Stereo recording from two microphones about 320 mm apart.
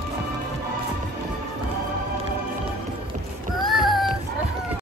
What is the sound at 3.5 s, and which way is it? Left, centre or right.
Child singing, centre.